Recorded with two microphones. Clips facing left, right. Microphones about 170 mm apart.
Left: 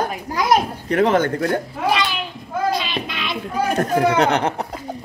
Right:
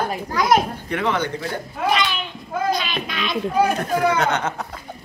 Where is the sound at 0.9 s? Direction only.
40° left (ahead or behind); by 1.6 s 60° left (ahead or behind).